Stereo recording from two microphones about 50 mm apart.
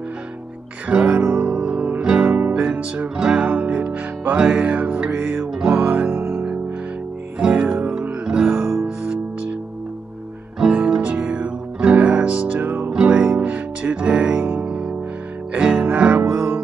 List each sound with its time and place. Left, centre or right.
0.8 s music: right
2.0 s music: centre; by 5.5 s right
5.5 s music: centre
6.1 s music: right
7.5 s music: right
8.4 s music: centre
10.6 s music: centre; by 12.9 s right
13.0 s music: right